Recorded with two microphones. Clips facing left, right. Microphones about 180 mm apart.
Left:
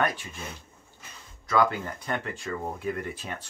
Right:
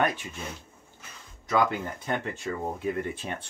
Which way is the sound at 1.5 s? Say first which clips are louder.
Left 1 dB; 20° right (ahead or behind).